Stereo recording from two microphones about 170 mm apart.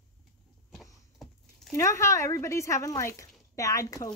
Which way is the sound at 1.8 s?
15° left (ahead or behind).